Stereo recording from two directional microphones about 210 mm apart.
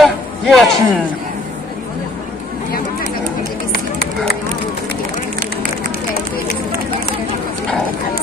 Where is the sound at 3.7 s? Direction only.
45° left (ahead or behind).